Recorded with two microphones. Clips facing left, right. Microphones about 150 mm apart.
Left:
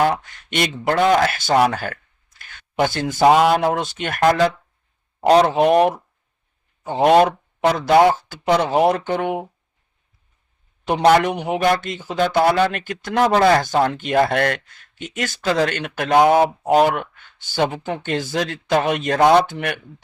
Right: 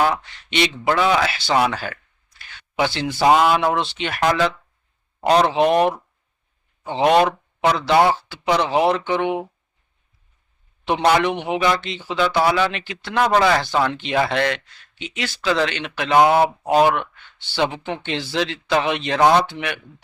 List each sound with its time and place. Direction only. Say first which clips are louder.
0.0 s speech: left 1 dB; 45° left (ahead or behind)
10.8 s speech: left 3 dB; 45° left (ahead or behind)